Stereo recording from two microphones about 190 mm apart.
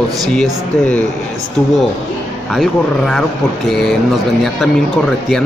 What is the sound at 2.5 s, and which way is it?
A man's voice, centre (ahead or behind).